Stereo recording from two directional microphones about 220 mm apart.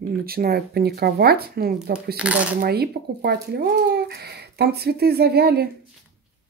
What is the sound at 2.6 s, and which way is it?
Speech, 45° right (ahead or behind).